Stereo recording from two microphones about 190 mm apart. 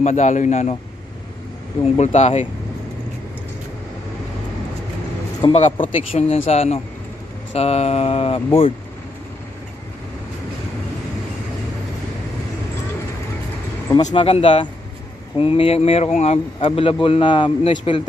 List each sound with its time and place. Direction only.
0.0 s speech: 35° left (ahead or behind)
1.8 s speech: 35° left (ahead or behind)
5.4 s speech: 30° left (ahead or behind)
14.1 s speech: 30° left (ahead or behind)